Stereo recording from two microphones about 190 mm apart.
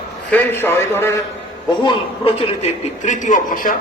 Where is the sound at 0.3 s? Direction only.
10° left (ahead or behind).